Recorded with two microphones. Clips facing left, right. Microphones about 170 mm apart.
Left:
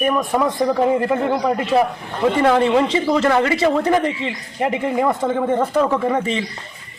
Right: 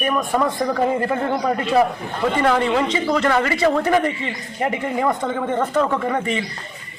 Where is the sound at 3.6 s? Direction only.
Centre (ahead or behind).